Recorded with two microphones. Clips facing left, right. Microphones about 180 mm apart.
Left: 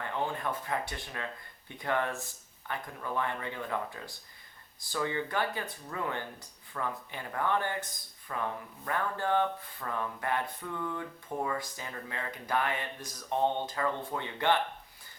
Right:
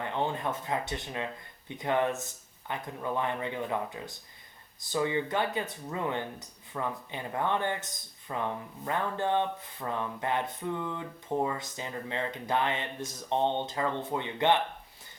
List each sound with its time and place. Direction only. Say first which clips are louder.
0.0 s speech: right 3 dB; 20° right (ahead or behind)